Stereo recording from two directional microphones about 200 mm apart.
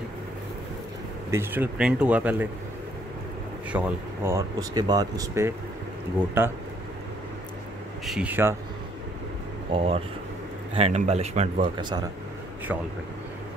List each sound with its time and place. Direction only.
1.3 s speech: 10° right (ahead or behind)
3.7 s speech: 10° right (ahead or behind)
8.0 s speech: 5° right (ahead or behind)
9.7 s speech: 30° right (ahead or behind)